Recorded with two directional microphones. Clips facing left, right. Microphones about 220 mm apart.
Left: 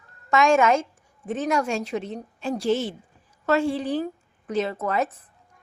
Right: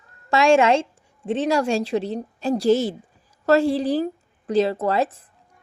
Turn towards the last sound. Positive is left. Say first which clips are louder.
# right 4 dB
turn(degrees=-30)  # may be behind; listen again after turning